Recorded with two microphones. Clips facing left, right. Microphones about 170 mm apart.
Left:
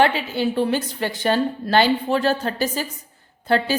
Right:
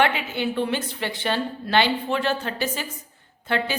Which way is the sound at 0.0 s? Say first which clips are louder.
Left 4 dB; 35° left (ahead or behind).